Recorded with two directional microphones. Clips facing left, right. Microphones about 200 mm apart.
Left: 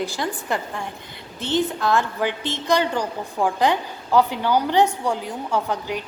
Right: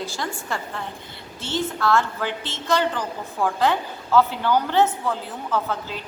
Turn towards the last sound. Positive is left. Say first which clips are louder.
# left 2 dB
turn(degrees=15)  # may be behind; listen again after turning